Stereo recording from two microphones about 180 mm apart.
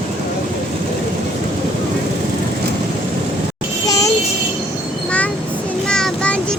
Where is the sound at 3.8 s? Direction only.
20° left (ahead or behind).